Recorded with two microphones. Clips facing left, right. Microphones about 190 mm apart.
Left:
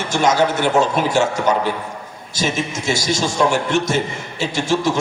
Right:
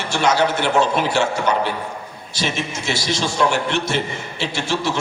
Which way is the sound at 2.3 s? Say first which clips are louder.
Left 3 dB; 45° left (ahead or behind).